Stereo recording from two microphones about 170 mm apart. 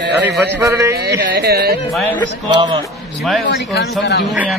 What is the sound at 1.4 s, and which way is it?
Speech, 70° right (ahead or behind).